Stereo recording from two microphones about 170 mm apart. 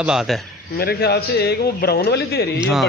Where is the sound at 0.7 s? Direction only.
65° left (ahead or behind).